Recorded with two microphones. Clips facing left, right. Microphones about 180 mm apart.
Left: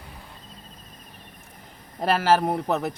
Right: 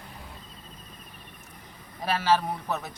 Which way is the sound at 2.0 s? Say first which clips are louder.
Left 4 dB; 60° left (ahead or behind).